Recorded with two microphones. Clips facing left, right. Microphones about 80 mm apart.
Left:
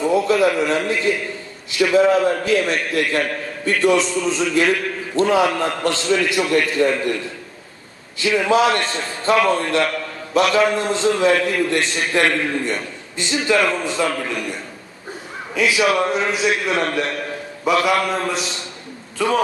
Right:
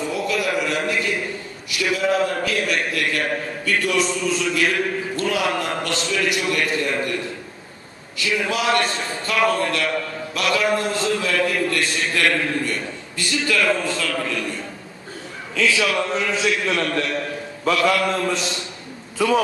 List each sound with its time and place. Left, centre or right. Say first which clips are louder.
0.1 s a man's voice: left 7 dB; left
8.2 s a man's voice: left 7 dB; left